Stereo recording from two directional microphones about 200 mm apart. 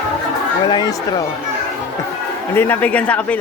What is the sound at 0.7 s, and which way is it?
Speech, 20° left (ahead or behind).